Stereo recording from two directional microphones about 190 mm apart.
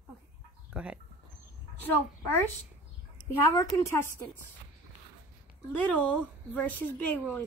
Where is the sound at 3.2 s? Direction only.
20° left (ahead or behind).